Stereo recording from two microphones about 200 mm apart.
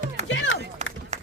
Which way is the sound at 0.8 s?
35° right (ahead or behind).